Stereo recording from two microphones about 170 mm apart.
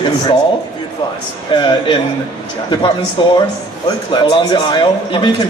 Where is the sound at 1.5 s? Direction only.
25° left (ahead or behind).